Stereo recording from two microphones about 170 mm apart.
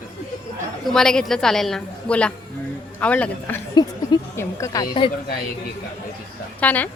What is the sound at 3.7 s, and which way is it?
A woman's voice, 25° left (ahead or behind).